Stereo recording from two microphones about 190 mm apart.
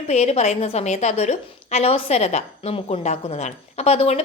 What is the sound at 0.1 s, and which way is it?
A woman's voice, 35° left (ahead or behind).